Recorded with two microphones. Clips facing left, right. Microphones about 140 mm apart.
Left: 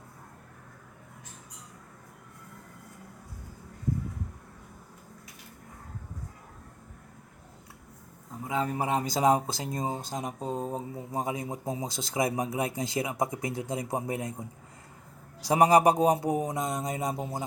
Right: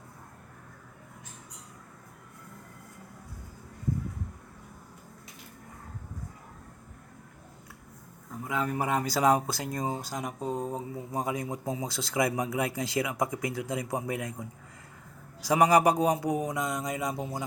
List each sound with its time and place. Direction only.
8.4 s speech: 25° left (ahead or behind)